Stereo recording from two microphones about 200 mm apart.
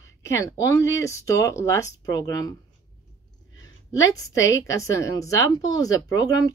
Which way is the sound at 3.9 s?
15° left (ahead or behind).